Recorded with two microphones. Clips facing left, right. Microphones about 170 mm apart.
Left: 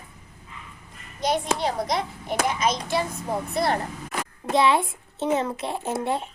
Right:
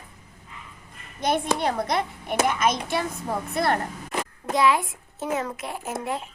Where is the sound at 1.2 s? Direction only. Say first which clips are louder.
Even; 55° right (ahead or behind).